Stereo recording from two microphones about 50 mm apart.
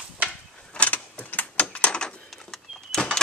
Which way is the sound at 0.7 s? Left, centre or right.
Left.